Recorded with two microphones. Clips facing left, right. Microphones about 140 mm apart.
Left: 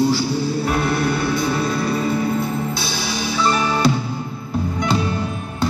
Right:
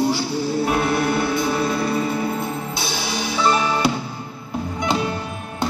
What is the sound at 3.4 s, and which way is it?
Music, 20° right (ahead or behind).